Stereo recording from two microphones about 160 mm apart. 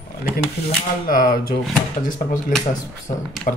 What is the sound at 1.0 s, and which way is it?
Speech, 65° left (ahead or behind).